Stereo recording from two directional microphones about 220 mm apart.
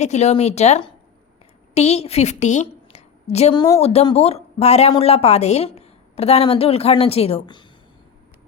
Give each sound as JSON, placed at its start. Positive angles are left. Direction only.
{"t": 0.0, "sound": "a woman's voice", "side_deg": 30}